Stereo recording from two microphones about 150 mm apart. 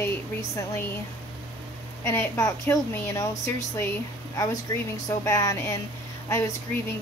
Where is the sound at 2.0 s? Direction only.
15° left (ahead or behind).